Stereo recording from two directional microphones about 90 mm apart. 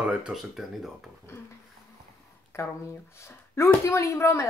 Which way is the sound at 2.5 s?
30° left (ahead or behind).